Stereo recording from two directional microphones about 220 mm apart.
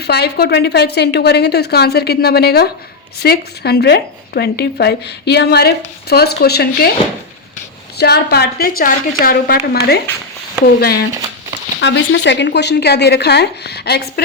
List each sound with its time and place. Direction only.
0.0 s speech: 45° left (ahead or behind)
7.9 s speech: 45° left (ahead or behind)